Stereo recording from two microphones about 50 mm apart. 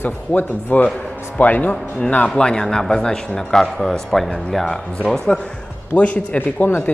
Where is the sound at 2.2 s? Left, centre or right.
Centre.